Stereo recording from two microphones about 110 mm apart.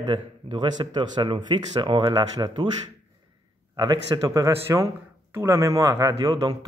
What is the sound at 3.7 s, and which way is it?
Speech, 40° right (ahead or behind).